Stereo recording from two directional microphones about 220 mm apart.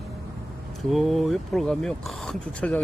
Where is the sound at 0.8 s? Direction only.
Centre (ahead or behind).